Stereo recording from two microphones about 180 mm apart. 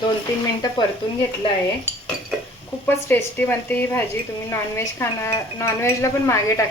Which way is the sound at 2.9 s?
10° left (ahead or behind).